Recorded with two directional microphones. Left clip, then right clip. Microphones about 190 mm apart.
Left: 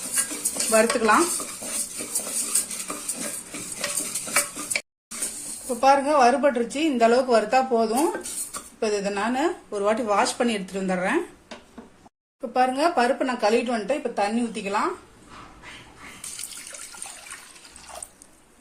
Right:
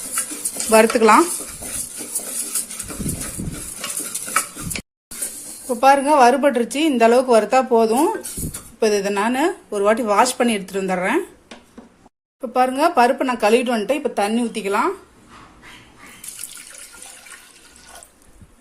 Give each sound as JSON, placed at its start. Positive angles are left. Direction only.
{"t": 0.7, "sound": "speech", "side_deg": -40}
{"t": 5.6, "sound": "a woman's voice", "side_deg": -45}
{"t": 12.4, "sound": "a woman's voice", "side_deg": -35}